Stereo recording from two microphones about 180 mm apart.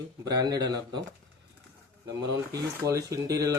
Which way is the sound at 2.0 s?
20° right (ahead or behind).